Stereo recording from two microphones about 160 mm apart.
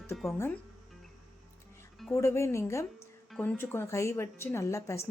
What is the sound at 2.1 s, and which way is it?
A woman's voice, 20° left (ahead or behind).